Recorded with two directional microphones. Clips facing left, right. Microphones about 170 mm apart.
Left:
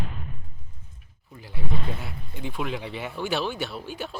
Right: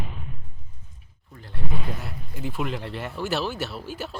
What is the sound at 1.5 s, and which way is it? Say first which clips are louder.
Speech: even; centre (ahead or behind).